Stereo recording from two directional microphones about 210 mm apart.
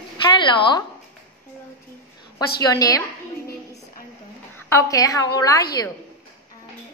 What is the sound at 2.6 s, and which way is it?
Speech, 15° left (ahead or behind).